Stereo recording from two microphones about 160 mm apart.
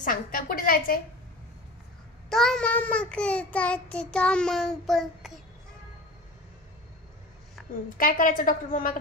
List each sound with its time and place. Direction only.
0.0 s a woman's voice: 60° left (ahead or behind)
2.2 s child singing: 5° left (ahead or behind)
8.0 s a woman's voice: 60° left (ahead or behind)